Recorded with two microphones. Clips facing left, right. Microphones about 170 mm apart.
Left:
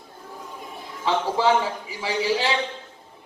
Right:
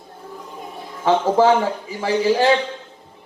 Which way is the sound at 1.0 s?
45° right (ahead or behind).